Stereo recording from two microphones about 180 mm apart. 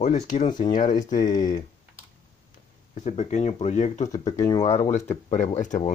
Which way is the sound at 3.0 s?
40° left (ahead or behind).